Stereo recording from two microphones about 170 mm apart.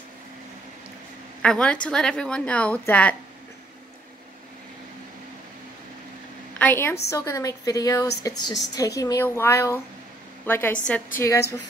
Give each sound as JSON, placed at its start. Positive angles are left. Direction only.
{"t": 1.4, "sound": "a woman's voice", "side_deg": 5}
{"t": 6.6, "sound": "a woman's voice", "side_deg": 10}